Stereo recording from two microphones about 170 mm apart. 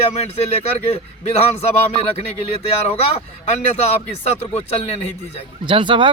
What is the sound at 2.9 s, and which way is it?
Speech, 35° left (ahead or behind).